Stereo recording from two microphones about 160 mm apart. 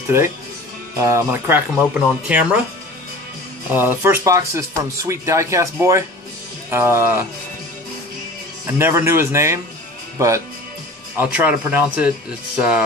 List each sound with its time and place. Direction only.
0.9 s speech: 15° right (ahead or behind)
3.7 s speech: 10° right (ahead or behind)
8.6 s speech: 15° right (ahead or behind)